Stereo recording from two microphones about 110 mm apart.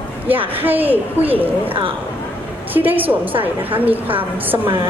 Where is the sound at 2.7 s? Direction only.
15° right (ahead or behind).